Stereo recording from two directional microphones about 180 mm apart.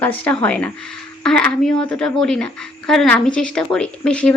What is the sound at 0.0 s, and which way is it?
Speech, 5° left (ahead or behind).